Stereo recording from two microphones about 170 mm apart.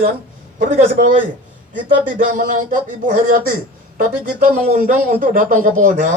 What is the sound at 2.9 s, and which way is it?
Speech, 50° right (ahead or behind).